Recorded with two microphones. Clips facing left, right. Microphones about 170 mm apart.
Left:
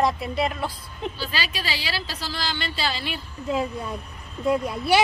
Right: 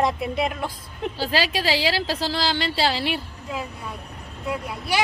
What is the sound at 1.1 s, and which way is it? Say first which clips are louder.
A woman's voice: right 7 dB; 90° right.